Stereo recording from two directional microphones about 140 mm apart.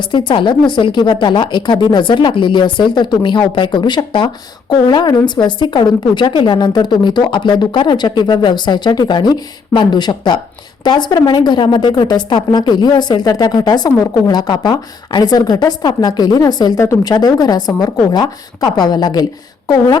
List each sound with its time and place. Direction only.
0.0 s a woman's voice: 35° left (ahead or behind)